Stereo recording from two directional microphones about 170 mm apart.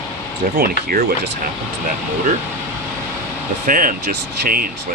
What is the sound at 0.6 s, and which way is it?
Speech, 60° right (ahead or behind).